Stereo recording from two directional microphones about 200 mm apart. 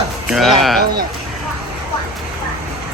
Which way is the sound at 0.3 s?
Centre (ahead or behind).